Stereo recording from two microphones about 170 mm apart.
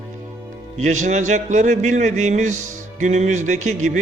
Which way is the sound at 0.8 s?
45° right (ahead or behind).